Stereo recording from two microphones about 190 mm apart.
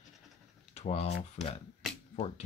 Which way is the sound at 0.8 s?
35° left (ahead or behind).